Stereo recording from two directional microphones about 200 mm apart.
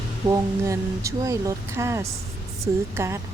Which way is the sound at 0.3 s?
15° right (ahead or behind).